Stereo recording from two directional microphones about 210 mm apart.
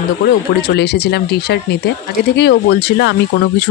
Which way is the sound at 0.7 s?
50° left (ahead or behind).